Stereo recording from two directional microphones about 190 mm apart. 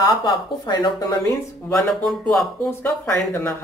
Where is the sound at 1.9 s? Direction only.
Centre (ahead or behind).